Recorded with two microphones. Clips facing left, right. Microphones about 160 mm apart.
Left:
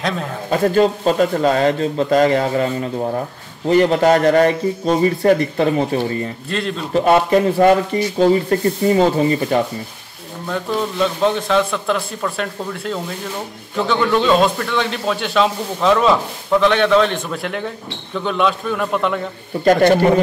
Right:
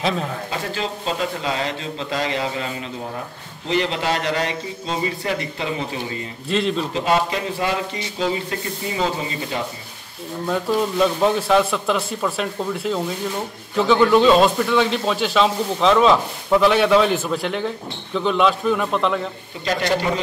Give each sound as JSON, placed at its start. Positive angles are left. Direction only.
{"t": 0.5, "sound": "speech", "side_deg": 50}
{"t": 6.5, "sound": "speech", "side_deg": 0}
{"t": 6.9, "sound": "speech", "side_deg": 50}
{"t": 10.5, "sound": "speech", "side_deg": -5}
{"t": 19.6, "sound": "speech", "side_deg": 50}